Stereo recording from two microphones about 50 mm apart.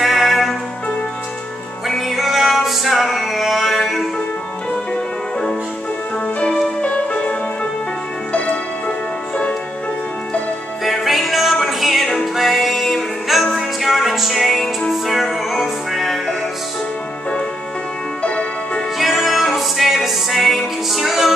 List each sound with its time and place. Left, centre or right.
0.0 s music: centre
1.9 s music: centre
6.8 s music: left
10.8 s music: centre
18.2 s music: left
18.9 s music: centre